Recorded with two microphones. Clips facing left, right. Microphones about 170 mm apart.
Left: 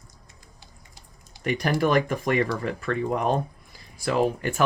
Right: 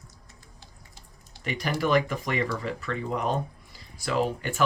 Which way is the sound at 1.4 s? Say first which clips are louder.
Left 5 dB; 50° left (ahead or behind).